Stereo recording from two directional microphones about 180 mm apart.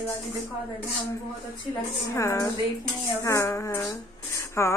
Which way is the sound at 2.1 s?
15° left (ahead or behind).